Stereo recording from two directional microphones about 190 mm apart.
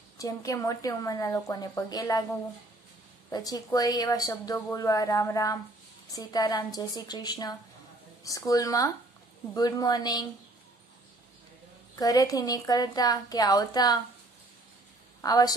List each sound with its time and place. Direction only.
0.2 s a woman's voice: 15° left (ahead or behind)
3.3 s a woman's voice: 20° left (ahead or behind)
11.9 s speech: 20° left (ahead or behind)
15.2 s speech: 20° left (ahead or behind)